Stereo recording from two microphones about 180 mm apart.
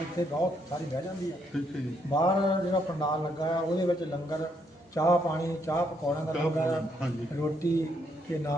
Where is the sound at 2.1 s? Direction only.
25° left (ahead or behind).